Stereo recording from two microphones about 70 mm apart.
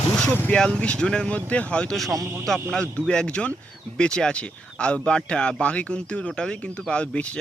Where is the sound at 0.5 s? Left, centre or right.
Centre.